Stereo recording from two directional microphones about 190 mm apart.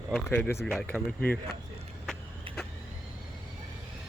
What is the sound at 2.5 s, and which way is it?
Vehicle, 25° right (ahead or behind).